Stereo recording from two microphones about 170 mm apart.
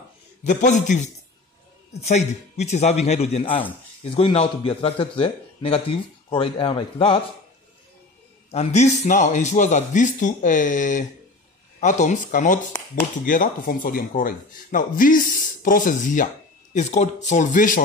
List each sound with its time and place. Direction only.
0.4 s a man's voice: 45° left (ahead or behind); by 7.2 s 30° left (ahead or behind)
8.5 s speech: 40° left (ahead or behind)